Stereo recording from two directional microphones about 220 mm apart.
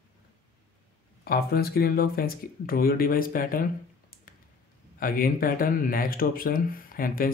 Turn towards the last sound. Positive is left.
turn(degrees=40)  # may be behind; listen again after turning